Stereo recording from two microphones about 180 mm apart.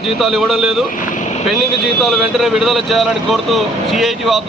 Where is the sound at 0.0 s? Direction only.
Centre (ahead or behind).